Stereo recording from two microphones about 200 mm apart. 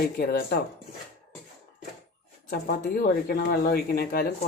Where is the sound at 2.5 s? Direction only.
45° left (ahead or behind).